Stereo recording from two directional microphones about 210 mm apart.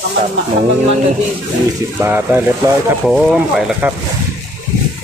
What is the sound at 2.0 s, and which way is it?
Speech, 10° right (ahead or behind).